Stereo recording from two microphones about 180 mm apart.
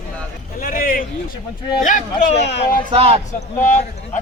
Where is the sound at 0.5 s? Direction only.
50° left (ahead or behind).